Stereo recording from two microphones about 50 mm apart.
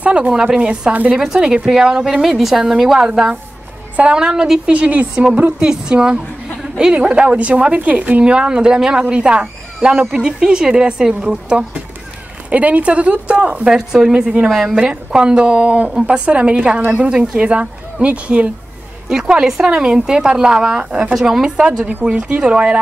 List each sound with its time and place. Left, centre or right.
0.0 s speech: right
0.3 s speech: centre
2.2 s speech: centre
3.1 s a woman's voice: centre